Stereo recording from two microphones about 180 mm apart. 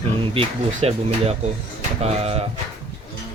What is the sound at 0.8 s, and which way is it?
Speech, 35° right (ahead or behind).